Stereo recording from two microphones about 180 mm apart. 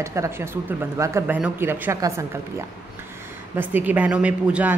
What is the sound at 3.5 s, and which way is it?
A woman's voice, 10° right (ahead or behind).